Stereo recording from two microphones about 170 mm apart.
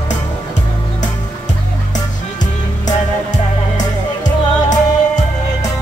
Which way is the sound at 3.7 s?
45° left (ahead or behind).